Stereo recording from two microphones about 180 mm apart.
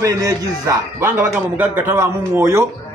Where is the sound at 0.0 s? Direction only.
20° right (ahead or behind).